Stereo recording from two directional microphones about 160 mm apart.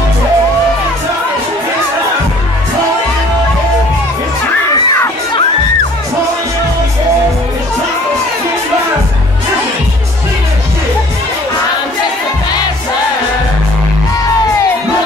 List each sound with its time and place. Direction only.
4.6 s crowd: 20° left (ahead or behind)